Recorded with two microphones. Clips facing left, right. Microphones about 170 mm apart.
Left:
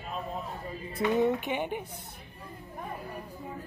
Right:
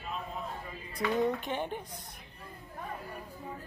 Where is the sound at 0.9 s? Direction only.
20° left (ahead or behind).